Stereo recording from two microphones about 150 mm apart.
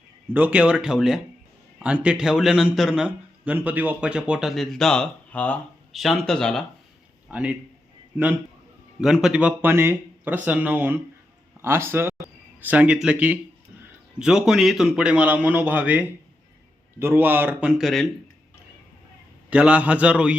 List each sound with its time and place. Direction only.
0.3 s a man's voice: 10° right (ahead or behind); by 6.7 s 5° left (ahead or behind)
7.3 s a man's voice: 10° right (ahead or behind)
19.5 s speech: 10° right (ahead or behind)